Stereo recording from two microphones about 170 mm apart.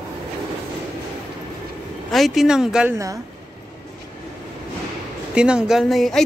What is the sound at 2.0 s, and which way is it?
Speech, centre (ahead or behind).